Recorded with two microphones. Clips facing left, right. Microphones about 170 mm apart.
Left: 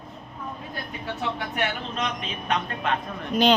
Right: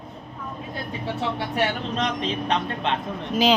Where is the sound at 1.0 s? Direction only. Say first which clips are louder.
Right 3 dB; 30° right (ahead or behind).